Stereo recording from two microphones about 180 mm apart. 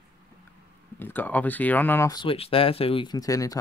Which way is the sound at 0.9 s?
10° left (ahead or behind).